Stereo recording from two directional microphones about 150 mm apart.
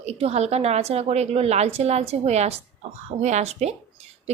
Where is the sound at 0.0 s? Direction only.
45° right (ahead or behind).